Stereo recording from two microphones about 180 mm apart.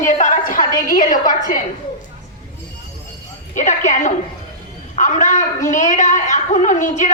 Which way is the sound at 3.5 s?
45° left (ahead or behind).